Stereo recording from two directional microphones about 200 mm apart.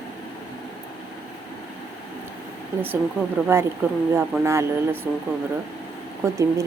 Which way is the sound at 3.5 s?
10° right (ahead or behind).